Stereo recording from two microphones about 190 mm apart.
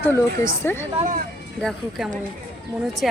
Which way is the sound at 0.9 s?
40° right (ahead or behind).